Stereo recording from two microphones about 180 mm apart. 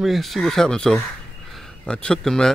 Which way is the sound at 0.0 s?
Centre (ahead or behind).